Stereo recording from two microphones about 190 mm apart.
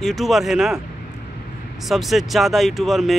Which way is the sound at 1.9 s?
Centre (ahead or behind).